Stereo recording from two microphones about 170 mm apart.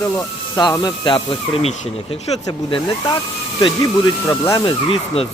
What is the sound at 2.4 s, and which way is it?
Speech, 20° left (ahead or behind).